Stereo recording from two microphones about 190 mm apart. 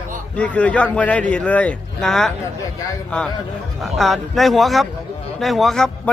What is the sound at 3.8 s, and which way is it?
A man's voice, centre (ahead or behind).